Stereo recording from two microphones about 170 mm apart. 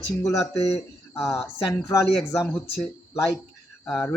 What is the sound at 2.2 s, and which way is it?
Speech, centre (ahead or behind).